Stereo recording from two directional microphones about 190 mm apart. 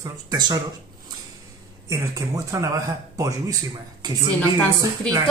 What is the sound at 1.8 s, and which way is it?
Speech, 15° right (ahead or behind).